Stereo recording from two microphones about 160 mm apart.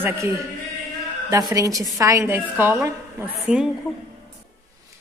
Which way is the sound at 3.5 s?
5° right (ahead or behind).